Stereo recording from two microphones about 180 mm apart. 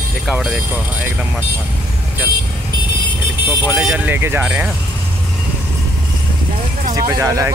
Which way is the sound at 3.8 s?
10° right (ahead or behind).